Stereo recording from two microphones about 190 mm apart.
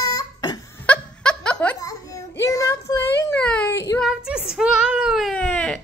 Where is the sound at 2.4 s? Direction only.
15° left (ahead or behind).